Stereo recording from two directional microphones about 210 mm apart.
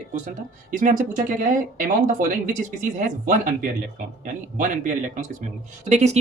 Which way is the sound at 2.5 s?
35° right (ahead or behind).